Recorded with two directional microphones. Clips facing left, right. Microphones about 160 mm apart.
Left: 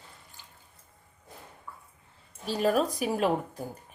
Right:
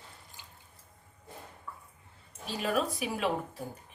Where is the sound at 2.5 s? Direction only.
40° left (ahead or behind).